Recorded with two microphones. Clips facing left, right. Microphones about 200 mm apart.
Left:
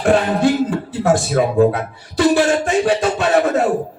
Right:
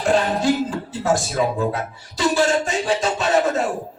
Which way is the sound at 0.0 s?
60° left (ahead or behind).